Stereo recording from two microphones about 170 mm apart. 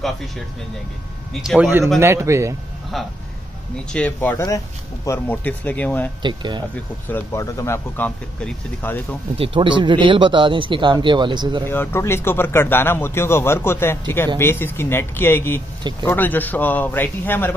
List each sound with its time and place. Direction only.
1.3 s a man's voice: centre (ahead or behind)
3.9 s speech: 10° left (ahead or behind)
6.2 s speech: 25° right (ahead or behind)
6.7 s speech: 10° left (ahead or behind)
9.4 s speech: 30° right (ahead or behind)
11.6 s speech: 15° left (ahead or behind)